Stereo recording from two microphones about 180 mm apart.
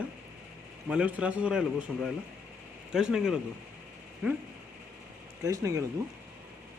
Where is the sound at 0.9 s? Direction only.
5° right (ahead or behind).